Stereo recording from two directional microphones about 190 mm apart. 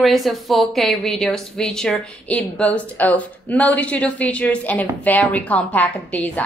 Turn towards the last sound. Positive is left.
turn(degrees=5)  # may be behind; listen again after turning